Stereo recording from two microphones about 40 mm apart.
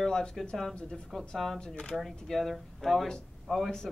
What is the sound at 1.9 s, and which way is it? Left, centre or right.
Speech, right.